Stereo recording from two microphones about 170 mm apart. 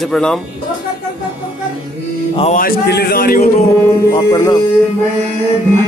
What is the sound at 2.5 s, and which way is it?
Speech, 65° left (ahead or behind).